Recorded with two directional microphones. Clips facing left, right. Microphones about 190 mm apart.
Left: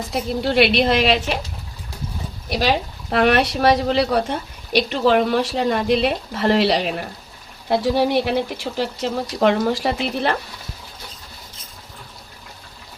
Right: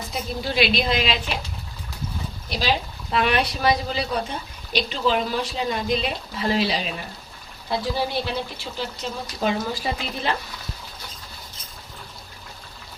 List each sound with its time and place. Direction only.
0.1 s speech: 65° left (ahead or behind)
3.1 s speech: 60° left (ahead or behind)
7.7 s speech: 70° left (ahead or behind)